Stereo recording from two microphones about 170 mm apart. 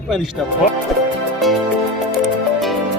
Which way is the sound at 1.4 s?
Centre (ahead or behind).